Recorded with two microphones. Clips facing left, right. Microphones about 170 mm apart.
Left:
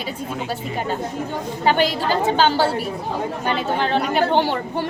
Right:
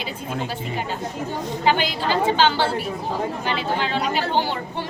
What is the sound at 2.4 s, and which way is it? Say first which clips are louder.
A woman's voice: left 2 dB; 40° left (ahead or behind).